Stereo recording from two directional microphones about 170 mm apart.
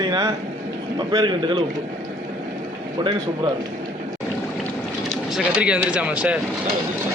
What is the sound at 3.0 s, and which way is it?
Speech, 30° right (ahead or behind).